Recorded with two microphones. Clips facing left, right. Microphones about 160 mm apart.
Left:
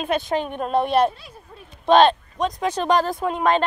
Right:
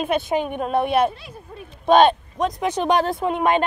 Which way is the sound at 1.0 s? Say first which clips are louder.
Even; centre (ahead or behind).